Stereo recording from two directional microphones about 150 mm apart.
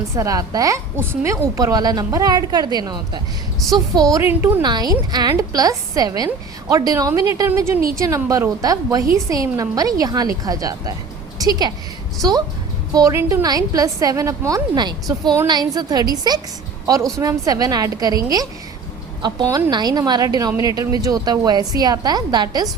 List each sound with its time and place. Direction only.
0.2 s a woman's voice: 25° right (ahead or behind)
4.6 s a woman's voice: 25° right (ahead or behind)
12.9 s a woman's voice: 20° right (ahead or behind)
19.2 s a woman's voice: 25° right (ahead or behind)